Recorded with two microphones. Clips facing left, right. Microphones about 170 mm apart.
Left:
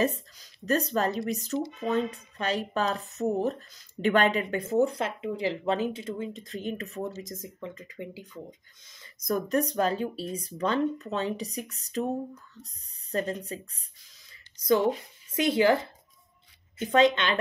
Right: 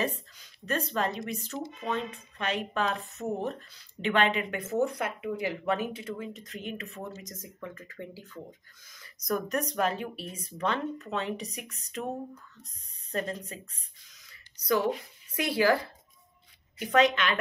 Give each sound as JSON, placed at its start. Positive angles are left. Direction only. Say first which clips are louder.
{"t": 0.0, "sound": "speech", "louder": "left 5 dB", "side_deg": 40}
{"t": 7.1, "sound": "speech", "louder": "left 5 dB", "side_deg": 25}